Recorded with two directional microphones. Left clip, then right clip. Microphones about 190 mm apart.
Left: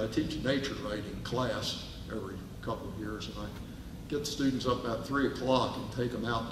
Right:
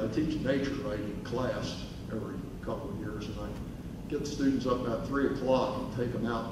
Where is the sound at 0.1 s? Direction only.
30° left (ahead or behind).